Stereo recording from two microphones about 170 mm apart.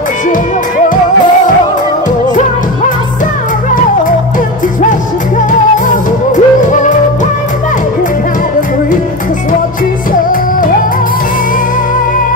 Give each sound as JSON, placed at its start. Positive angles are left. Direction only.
{"t": 5.5, "sound": "music", "side_deg": 50}